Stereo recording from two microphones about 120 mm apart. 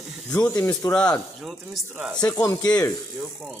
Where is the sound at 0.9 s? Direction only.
10° left (ahead or behind).